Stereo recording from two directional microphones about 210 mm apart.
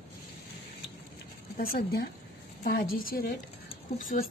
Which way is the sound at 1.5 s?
45° left (ahead or behind).